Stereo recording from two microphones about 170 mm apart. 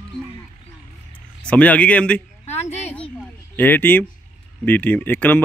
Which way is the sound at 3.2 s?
10° left (ahead or behind).